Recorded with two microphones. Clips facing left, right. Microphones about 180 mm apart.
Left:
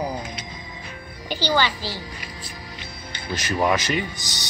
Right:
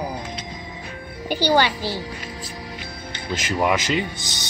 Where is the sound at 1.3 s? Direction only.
55° right (ahead or behind).